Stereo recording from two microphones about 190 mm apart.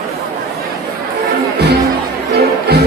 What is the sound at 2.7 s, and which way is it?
Music, 55° right (ahead or behind).